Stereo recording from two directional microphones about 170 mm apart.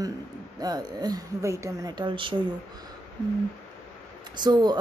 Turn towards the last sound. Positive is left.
turn(degrees=-25)  # may be behind; listen again after turning